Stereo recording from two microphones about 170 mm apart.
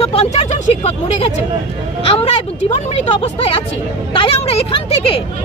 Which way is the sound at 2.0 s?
35° left (ahead or behind).